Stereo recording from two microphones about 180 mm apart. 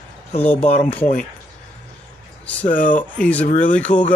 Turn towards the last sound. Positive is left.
turn(degrees=45)  # may be behind; listen again after turning